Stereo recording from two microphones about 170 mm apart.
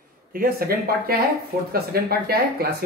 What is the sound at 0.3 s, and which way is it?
Speech, 60° right (ahead or behind).